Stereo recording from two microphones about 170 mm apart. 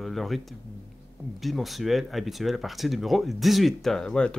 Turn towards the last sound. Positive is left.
turn(degrees=5)  # may be behind; listen again after turning